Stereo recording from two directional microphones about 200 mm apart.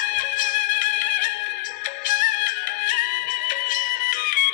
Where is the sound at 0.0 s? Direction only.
40° left (ahead or behind).